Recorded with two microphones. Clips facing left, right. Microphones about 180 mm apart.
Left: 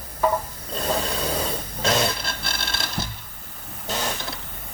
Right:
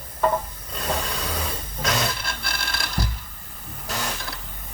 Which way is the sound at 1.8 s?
25° left (ahead or behind).